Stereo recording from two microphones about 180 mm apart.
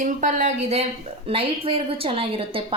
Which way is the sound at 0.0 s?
45° right (ahead or behind).